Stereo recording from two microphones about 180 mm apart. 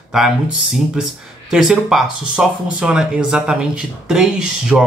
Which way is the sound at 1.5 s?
5° right (ahead or behind).